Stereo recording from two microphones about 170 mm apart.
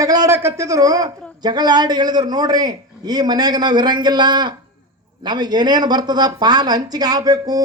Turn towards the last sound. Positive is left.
turn(degrees=-20)  # may be behind; listen again after turning